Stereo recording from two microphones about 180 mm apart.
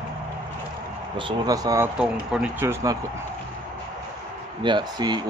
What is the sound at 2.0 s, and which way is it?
Speech, 5° right (ahead or behind).